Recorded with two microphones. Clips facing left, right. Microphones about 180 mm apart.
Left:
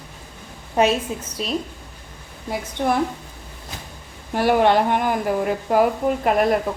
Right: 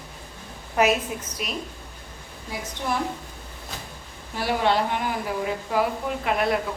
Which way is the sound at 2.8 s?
50° left (ahead or behind).